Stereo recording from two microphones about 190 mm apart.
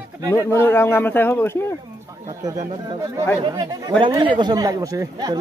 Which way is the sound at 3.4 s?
25° right (ahead or behind).